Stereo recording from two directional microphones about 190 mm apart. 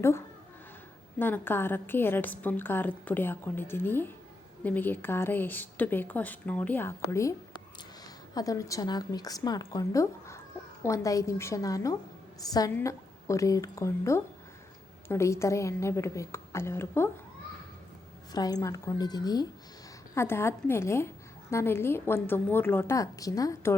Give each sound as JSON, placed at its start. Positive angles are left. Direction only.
{"t": 1.2, "sound": "a woman's voice", "side_deg": 10}
{"t": 8.4, "sound": "a woman's voice", "side_deg": 15}
{"t": 18.3, "sound": "a woman's voice", "side_deg": 20}